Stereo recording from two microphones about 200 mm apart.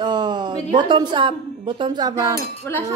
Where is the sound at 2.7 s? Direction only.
10° left (ahead or behind).